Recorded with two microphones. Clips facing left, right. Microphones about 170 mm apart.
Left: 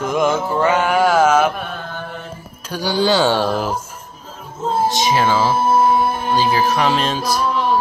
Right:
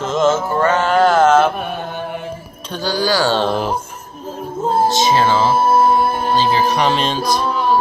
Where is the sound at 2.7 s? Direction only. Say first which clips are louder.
Left 1 dB; 15° left (ahead or behind).